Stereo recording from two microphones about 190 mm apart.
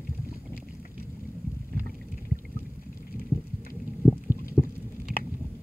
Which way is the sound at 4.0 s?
10° right (ahead or behind).